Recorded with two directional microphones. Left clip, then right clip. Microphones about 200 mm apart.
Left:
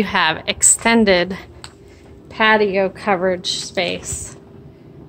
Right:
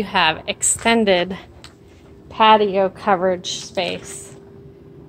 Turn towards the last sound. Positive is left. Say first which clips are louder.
# left 2 dB
turn(degrees=15)  # may be behind; listen again after turning